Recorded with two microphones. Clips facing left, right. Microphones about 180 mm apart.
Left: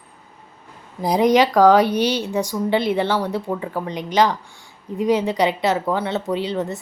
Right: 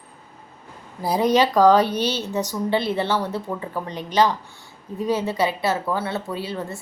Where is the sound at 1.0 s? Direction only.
15° left (ahead or behind).